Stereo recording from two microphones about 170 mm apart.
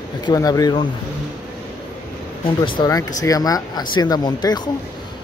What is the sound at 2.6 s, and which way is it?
Speech, 20° left (ahead or behind).